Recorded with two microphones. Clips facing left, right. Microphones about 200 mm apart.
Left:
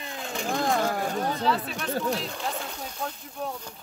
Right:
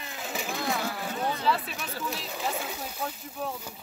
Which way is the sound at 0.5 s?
50° left (ahead or behind).